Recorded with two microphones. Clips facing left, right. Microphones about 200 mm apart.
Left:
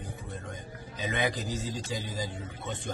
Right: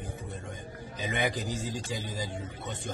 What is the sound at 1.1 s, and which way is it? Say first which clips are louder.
Speech: even; 15° right (ahead or behind).